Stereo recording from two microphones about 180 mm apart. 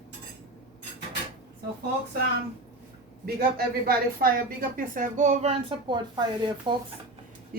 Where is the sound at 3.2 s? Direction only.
60° right (ahead or behind); by 5.5 s 40° right (ahead or behind).